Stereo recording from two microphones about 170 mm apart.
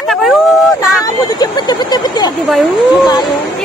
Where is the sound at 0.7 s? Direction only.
20° left (ahead or behind).